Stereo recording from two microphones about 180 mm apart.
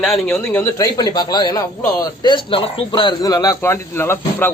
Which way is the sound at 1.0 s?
20° left (ahead or behind).